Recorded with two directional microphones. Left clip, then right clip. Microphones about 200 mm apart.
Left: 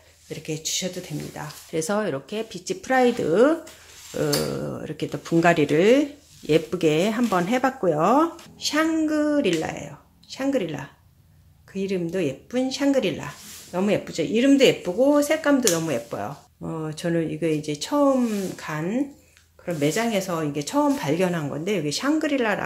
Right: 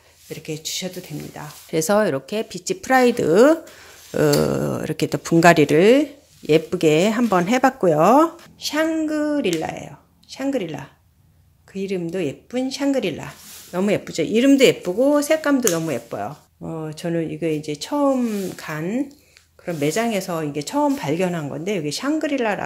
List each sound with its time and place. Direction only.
0.3 s speech: 20° right (ahead or behind)
8.5 s speech: 20° right (ahead or behind)